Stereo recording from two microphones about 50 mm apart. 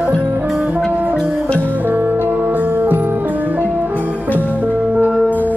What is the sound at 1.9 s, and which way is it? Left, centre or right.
Music, right.